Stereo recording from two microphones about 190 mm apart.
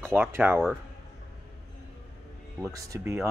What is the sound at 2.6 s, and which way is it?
Speech, 15° right (ahead or behind).